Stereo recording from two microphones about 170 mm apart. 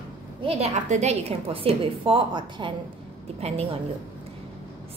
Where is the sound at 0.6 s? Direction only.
40° right (ahead or behind).